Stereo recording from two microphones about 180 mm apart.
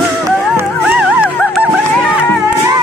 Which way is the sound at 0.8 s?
5° right (ahead or behind).